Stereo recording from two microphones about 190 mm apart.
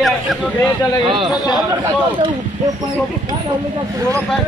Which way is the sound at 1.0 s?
25° right (ahead or behind).